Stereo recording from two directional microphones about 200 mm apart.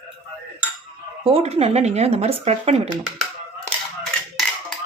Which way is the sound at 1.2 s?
30° right (ahead or behind).